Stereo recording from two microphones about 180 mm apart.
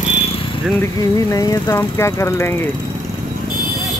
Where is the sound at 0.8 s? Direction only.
20° left (ahead or behind).